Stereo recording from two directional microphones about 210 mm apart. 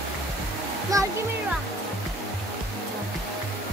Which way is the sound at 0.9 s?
15° right (ahead or behind).